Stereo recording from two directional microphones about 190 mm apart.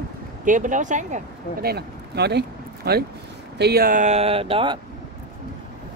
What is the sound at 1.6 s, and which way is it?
Speech, 60° right (ahead or behind).